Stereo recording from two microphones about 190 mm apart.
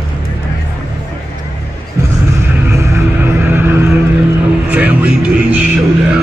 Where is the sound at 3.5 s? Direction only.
10° right (ahead or behind).